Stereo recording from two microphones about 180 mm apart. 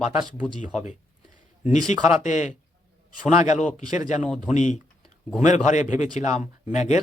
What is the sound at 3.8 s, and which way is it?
Speech, 20° right (ahead or behind).